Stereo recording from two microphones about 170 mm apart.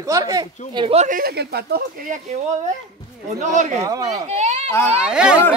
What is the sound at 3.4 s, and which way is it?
Speech, 45° right (ahead or behind).